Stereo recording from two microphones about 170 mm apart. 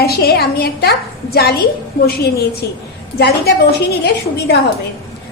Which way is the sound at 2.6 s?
70° left (ahead or behind).